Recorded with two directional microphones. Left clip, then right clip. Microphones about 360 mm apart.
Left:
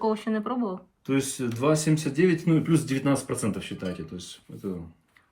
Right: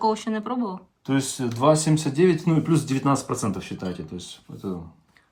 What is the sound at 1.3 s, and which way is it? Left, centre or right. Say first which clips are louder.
Speech: right 8 dB; centre.